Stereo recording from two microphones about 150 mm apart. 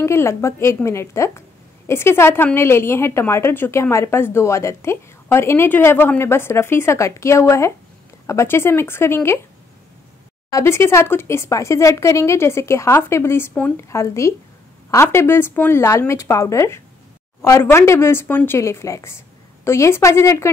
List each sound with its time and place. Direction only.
0.0 s a woman's voice: 15° left (ahead or behind)
10.5 s a woman's voice: 15° left (ahead or behind)